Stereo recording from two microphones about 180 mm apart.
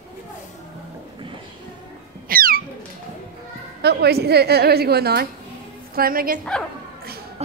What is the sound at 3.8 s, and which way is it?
A woman's voice, 65° right (ahead or behind).